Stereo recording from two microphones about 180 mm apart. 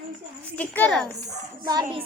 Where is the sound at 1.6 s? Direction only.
25° right (ahead or behind).